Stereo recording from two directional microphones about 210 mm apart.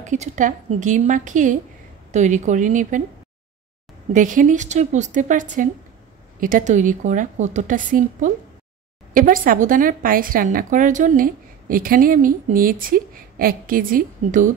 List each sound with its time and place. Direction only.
0.0 s a woman's voice: 35° right (ahead or behind)
4.1 s a woman's voice: 40° right (ahead or behind)